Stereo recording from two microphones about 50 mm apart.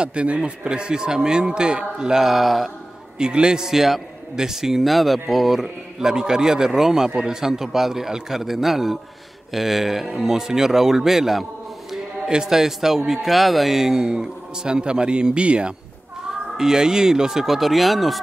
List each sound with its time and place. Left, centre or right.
0.0 s a man's voice: right; by 2.7 s centre
3.2 s a man's voice: centre